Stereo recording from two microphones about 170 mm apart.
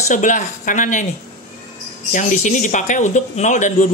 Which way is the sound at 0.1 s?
50° left (ahead or behind).